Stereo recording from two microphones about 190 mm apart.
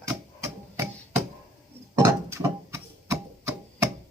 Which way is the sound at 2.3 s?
15° right (ahead or behind).